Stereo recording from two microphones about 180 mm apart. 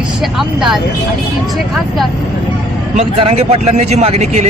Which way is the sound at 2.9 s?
35° right (ahead or behind).